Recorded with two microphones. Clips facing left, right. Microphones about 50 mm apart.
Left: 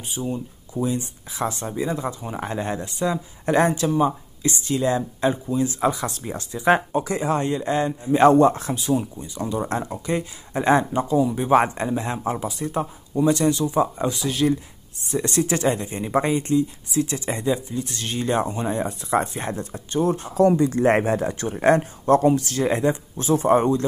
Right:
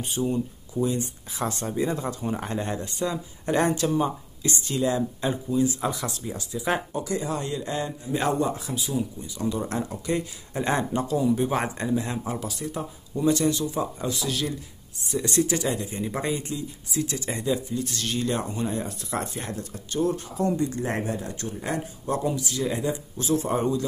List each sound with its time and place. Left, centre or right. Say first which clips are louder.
0.1 s speech: right 1 dB; centre
0.7 s speech: left 1 dB; centre
4.4 s speech: left 3 dB; left
5.2 s speech: left 4 dB; centre
6.0 s speech: left 3 dB; left
9.6 s speech: left 3 dB; left; by 11.5 s centre
11.5 s speech: left 7 dB; left
20.3 s speech: left 8 dB; left